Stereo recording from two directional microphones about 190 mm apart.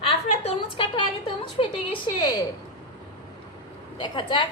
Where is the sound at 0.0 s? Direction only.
30° left (ahead or behind).